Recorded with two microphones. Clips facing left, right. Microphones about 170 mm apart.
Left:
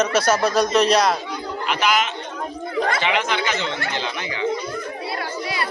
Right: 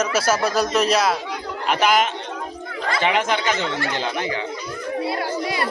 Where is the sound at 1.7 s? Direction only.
50° right (ahead or behind).